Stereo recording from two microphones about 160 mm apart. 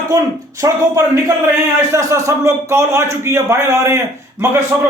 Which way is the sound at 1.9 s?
20° right (ahead or behind).